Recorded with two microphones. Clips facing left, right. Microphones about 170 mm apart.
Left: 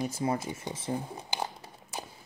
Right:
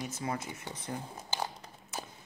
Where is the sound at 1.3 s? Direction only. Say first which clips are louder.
Left 1 dB; 15° left (ahead or behind).